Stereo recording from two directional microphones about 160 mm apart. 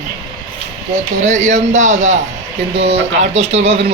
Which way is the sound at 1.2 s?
50° right (ahead or behind).